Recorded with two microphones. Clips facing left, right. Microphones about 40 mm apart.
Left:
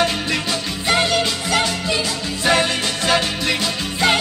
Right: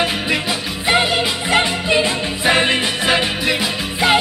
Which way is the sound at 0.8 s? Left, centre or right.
Right.